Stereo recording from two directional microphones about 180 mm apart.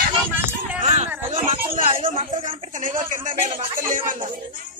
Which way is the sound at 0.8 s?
40° right (ahead or behind).